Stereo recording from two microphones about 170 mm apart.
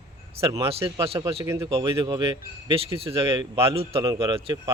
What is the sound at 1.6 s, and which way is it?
Speech, 30° right (ahead or behind).